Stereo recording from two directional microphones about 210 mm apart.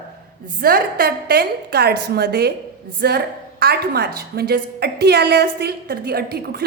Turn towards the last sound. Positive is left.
turn(degrees=-50)  # may be behind; listen again after turning